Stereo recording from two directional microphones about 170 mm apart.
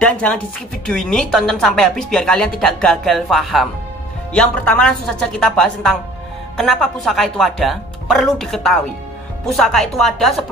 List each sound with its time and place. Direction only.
0.0 s speech: 5° left (ahead or behind)